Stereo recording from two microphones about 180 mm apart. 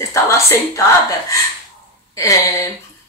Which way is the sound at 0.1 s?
15° left (ahead or behind).